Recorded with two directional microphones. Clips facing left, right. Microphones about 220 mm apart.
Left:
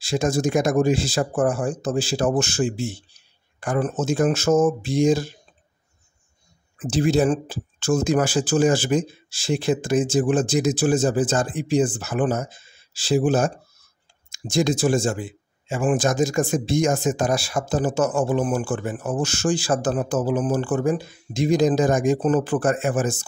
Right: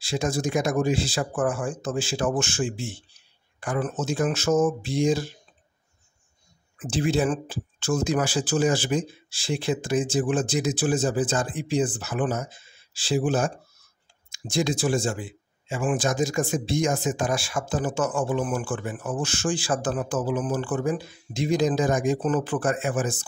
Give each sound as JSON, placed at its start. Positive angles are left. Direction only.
{"t": 0.0, "sound": "speech", "side_deg": 45}
{"t": 6.8, "sound": "speech", "side_deg": 40}